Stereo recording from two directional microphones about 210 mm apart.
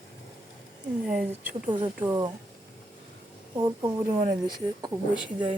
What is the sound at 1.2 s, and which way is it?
Speech, 5° right (ahead or behind).